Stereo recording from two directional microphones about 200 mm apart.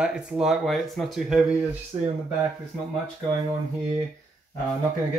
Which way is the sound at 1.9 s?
20° right (ahead or behind).